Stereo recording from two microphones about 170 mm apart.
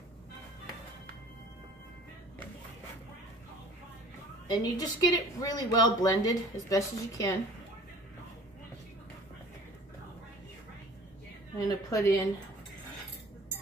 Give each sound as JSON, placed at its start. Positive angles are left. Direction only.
{"t": 4.5, "sound": "speech", "side_deg": 20}
{"t": 11.5, "sound": "a woman's voice", "side_deg": 20}